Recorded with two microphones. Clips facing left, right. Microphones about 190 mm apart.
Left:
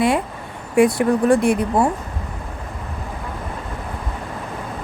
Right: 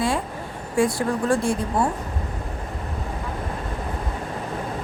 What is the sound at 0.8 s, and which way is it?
Speech, 20° left (ahead or behind).